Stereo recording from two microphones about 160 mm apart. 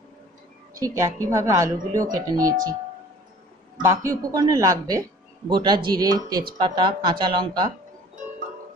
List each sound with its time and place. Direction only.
0.7 s a woman's voice: 20° right (ahead or behind)
3.8 s a woman's voice: 20° right (ahead or behind)